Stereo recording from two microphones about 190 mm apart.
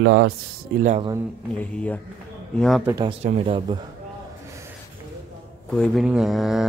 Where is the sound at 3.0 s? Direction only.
30° right (ahead or behind).